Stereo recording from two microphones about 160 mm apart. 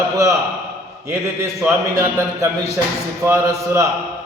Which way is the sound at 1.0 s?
15° right (ahead or behind).